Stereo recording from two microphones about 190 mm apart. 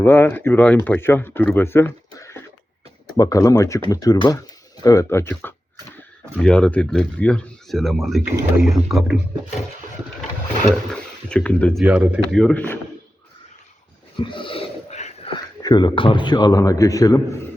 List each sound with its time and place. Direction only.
0.0 s a man's voice: 10° left (ahead or behind)
11.3 s speech: 5° left (ahead or behind)
14.2 s a sound: 25° left (ahead or behind)
15.6 s a man's voice: 25° left (ahead or behind)